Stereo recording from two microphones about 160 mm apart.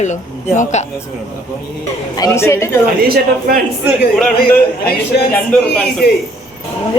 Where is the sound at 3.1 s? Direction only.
65° right (ahead or behind).